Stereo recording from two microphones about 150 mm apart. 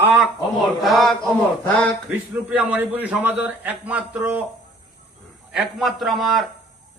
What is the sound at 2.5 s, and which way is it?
A man's voice, 10° right (ahead or behind).